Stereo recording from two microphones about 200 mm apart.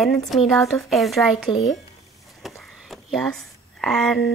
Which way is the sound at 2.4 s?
Centre (ahead or behind).